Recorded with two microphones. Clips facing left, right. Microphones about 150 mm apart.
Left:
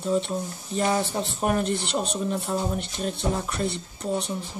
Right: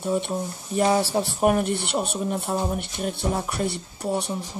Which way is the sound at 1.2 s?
55° right (ahead or behind).